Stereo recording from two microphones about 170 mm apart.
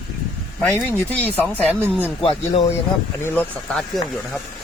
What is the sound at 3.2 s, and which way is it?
Speech, 15° left (ahead or behind).